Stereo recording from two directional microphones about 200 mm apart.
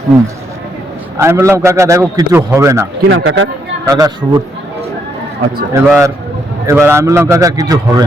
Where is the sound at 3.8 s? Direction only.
20° right (ahead or behind).